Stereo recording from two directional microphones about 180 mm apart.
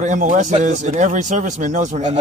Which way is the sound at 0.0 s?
45° right (ahead or behind).